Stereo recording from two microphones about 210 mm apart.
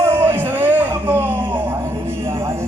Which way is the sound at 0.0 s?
10° right (ahead or behind).